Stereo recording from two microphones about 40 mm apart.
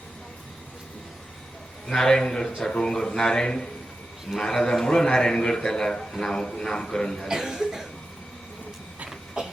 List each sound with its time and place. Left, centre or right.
1.9 s a man's voice: centre
7.3 s speech: centre
9.0 s a sound: centre